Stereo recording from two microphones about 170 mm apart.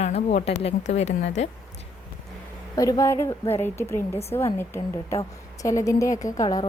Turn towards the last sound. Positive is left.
turn(degrees=20)  # may be behind; listen again after turning